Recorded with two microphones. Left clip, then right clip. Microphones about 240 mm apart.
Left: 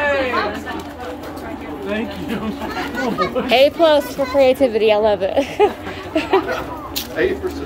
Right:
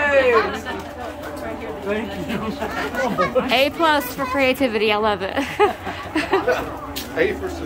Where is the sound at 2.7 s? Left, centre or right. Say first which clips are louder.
Even; centre.